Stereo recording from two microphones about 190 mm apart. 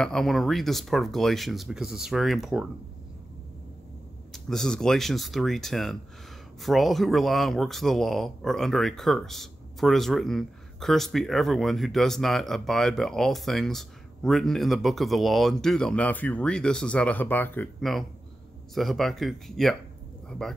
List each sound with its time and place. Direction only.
0.0 s speech: centre (ahead or behind)
4.3 s speech: centre (ahead or behind)